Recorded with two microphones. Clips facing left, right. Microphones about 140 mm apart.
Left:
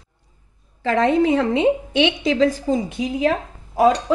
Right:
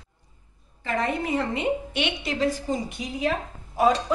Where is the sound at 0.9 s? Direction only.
90° left.